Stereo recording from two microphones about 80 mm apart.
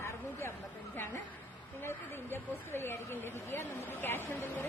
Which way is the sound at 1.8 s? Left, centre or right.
Left.